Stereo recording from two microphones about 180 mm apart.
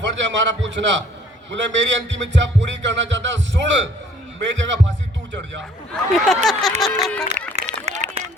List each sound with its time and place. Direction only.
0.0 s music: 85° right
4.4 s a man's voice: 90° right
5.9 s speech: centre (ahead or behind)
7.9 s run: 40° right (ahead or behind)